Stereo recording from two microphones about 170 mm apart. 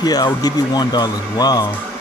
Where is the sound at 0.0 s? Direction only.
25° left (ahead or behind).